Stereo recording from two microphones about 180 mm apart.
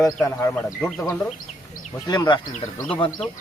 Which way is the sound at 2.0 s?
20° left (ahead or behind).